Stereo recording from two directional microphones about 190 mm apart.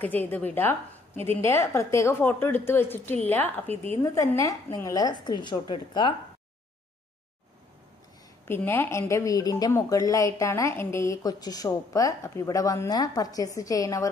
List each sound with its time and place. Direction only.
0.0 s a woman's voice: 10° left (ahead or behind)
8.5 s a woman's voice: 10° left (ahead or behind)